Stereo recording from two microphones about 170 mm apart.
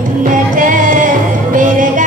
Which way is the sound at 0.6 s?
50° right (ahead or behind).